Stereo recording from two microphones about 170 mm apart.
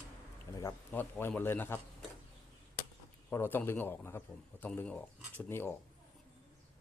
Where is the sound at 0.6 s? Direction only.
15° left (ahead or behind).